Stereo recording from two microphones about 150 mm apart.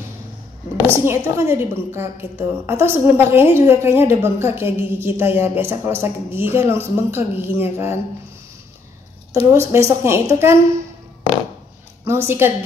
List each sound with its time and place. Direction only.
1.0 s a woman's voice: 20° right (ahead or behind)
9.3 s a woman's voice: 15° right (ahead or behind)
12.0 s a woman's voice: 15° right (ahead or behind)